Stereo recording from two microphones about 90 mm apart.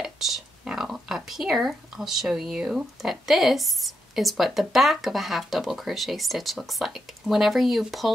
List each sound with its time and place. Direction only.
0.0 s speech: 5° right (ahead or behind)